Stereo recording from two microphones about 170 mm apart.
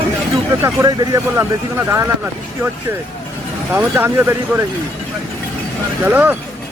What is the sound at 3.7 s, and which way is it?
Speech, 10° right (ahead or behind).